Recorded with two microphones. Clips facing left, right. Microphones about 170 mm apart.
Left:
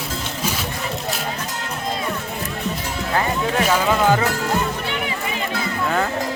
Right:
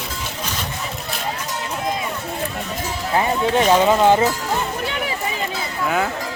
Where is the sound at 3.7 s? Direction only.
25° right (ahead or behind).